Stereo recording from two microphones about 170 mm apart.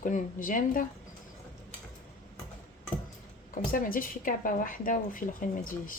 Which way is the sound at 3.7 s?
55° left (ahead or behind).